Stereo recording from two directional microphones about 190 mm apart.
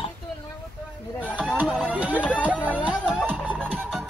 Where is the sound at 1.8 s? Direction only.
5° right (ahead or behind).